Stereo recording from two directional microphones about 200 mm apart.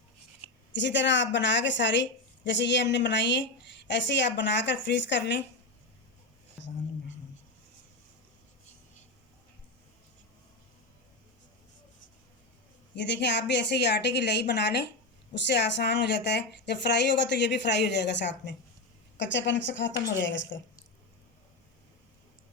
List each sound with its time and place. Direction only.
0.7 s a woman's voice: 60° left (ahead or behind)
13.0 s a woman's voice: 60° left (ahead or behind)